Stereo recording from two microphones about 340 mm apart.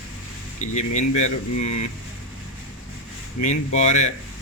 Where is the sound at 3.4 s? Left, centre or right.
Left.